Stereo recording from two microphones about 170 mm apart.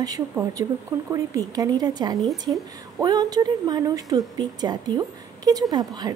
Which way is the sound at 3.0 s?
25° right (ahead or behind).